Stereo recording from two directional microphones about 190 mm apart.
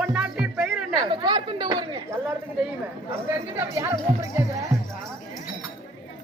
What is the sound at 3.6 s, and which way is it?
Speech, 15° right (ahead or behind).